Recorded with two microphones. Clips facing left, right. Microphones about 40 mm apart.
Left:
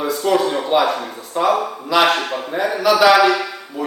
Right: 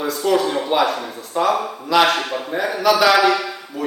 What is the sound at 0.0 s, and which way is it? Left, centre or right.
Speech, centre.